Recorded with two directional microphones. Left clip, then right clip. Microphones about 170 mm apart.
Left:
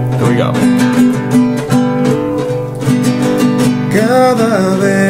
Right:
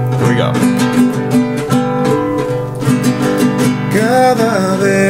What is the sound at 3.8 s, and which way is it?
Music, 15° right (ahead or behind).